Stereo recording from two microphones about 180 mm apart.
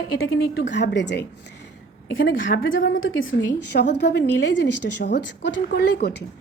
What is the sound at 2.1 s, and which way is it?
A woman's voice, 90° left.